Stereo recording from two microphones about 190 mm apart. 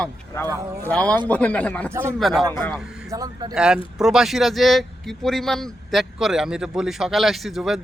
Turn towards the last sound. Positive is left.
turn(degrees=0)  # may be behind; listen again after turning